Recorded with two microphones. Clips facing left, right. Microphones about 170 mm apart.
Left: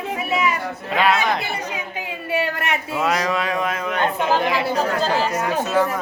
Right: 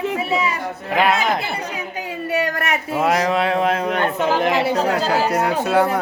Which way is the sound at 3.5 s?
30° right (ahead or behind).